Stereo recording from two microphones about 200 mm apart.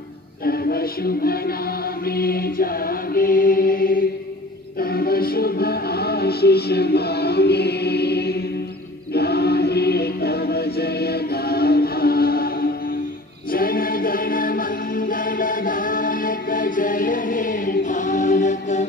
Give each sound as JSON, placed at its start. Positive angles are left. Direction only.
{"t": 0.5, "sound": "music", "side_deg": 50}
{"t": 2.0, "sound": "mantra", "side_deg": 50}
{"t": 4.7, "sound": "music", "side_deg": 50}
{"t": 13.5, "sound": "choir", "side_deg": 45}